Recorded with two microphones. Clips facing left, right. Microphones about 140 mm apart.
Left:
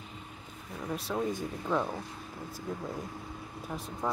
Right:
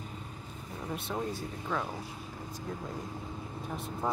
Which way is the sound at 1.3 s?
15° left (ahead or behind).